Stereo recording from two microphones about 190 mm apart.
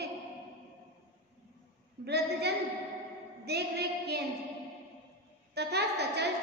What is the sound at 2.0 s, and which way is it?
A woman's voice, 60° right (ahead or behind).